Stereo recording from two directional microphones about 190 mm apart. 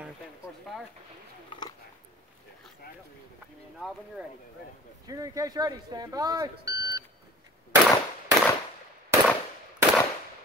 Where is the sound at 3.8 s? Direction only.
5° right (ahead or behind).